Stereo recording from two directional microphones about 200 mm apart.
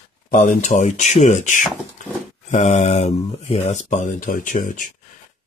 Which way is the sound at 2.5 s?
35° left (ahead or behind).